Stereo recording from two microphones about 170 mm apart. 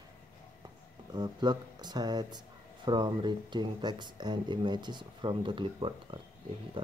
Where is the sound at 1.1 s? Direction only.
25° right (ahead or behind).